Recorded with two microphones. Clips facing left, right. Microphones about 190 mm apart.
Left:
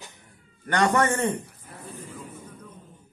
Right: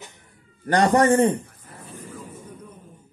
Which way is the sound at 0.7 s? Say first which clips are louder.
Right 5 dB; 35° right (ahead or behind).